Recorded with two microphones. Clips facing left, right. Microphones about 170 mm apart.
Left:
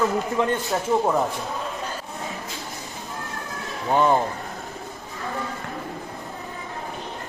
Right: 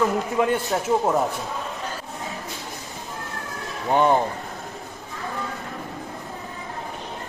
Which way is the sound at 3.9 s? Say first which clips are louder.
Right 1 dB; 15° right (ahead or behind).